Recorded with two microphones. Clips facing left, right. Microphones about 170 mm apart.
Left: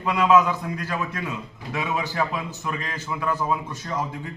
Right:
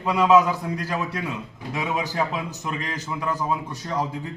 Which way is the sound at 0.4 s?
35° right (ahead or behind).